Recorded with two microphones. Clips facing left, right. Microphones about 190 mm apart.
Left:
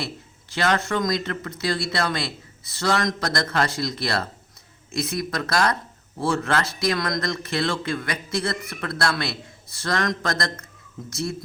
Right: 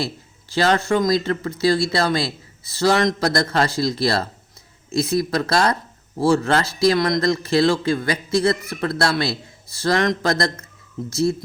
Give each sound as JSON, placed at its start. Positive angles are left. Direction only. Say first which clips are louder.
{"t": 0.5, "sound": "a man's voice", "louder": "right 5 dB", "side_deg": -30}